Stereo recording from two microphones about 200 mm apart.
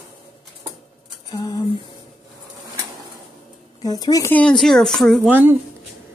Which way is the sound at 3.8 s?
20° left (ahead or behind).